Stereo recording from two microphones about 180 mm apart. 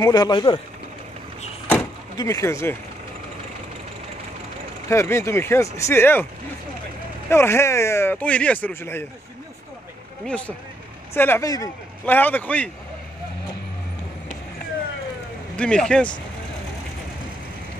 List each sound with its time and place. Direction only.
0.0 s speech: 20° left (ahead or behind)
2.1 s speech: 15° left (ahead or behind)
4.8 s speech: 15° left (ahead or behind)
7.2 s speech: 15° left (ahead or behind)
10.2 s speech: 5° left (ahead or behind)
15.5 s speech: 5° left (ahead or behind)